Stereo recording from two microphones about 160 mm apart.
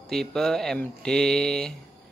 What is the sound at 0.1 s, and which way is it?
Speech, 5° left (ahead or behind).